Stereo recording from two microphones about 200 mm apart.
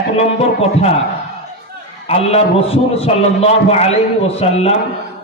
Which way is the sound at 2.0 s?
30° left (ahead or behind).